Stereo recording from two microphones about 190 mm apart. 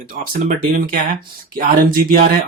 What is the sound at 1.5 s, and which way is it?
Speech, 45° right (ahead or behind).